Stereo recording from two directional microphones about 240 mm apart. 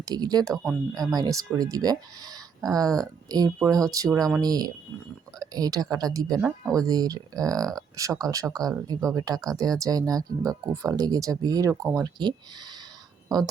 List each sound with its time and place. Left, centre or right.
0.0 s speech: centre
0.5 s speech: centre
1.1 s speech: centre